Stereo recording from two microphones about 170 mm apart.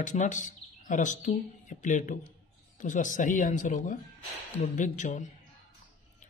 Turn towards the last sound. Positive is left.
turn(degrees=45)  # may be behind; listen again after turning